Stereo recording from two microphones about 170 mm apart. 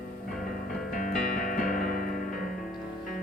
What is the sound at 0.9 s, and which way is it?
Music, 55° left (ahead or behind).